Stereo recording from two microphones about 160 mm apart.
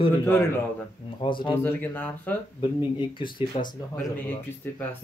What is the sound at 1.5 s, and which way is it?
Speech, 15° left (ahead or behind).